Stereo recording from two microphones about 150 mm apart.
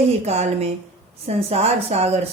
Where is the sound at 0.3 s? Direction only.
45° right (ahead or behind).